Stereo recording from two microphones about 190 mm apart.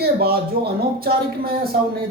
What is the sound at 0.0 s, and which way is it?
Speech, 55° right (ahead or behind).